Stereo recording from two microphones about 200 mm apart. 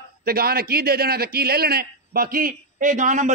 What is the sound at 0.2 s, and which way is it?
A man's voice, 50° right (ahead or behind).